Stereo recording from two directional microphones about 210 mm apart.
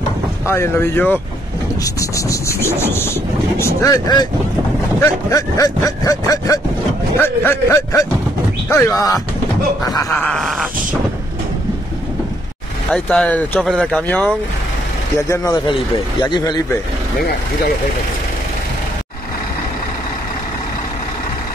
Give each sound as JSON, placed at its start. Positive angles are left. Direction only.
{"t": 0.5, "sound": "rub", "side_deg": 10}
{"t": 5.3, "sound": "rub", "side_deg": 15}
{"t": 9.8, "sound": "speech", "side_deg": 15}
{"t": 12.9, "sound": "speech", "side_deg": 5}